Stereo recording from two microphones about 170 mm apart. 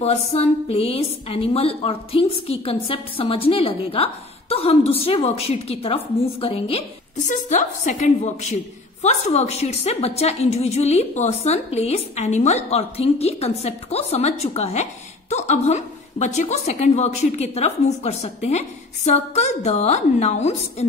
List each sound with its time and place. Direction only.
0.0 s a woman's voice: 40° left (ahead or behind)